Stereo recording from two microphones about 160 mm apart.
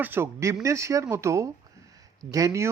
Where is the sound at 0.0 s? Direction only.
15° right (ahead or behind).